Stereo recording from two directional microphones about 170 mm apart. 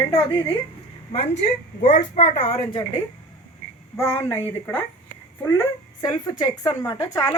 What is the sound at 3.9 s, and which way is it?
Speech, 15° left (ahead or behind).